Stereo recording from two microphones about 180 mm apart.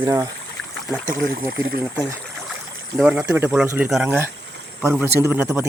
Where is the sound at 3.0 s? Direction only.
5° right (ahead or behind).